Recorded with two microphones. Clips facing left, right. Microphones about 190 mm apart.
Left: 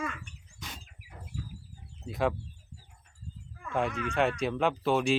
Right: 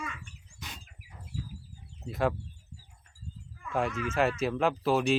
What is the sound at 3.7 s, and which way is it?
Speech, centre (ahead or behind).